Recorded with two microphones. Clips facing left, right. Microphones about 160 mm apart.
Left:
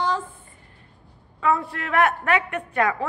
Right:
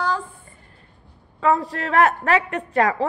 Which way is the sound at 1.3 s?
40° right (ahead or behind).